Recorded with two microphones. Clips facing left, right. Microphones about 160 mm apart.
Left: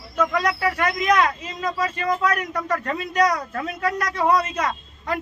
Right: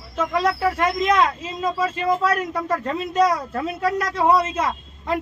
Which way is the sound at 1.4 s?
30° right (ahead or behind).